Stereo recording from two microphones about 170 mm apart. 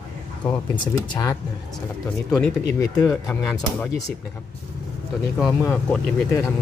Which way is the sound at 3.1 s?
Centre (ahead or behind).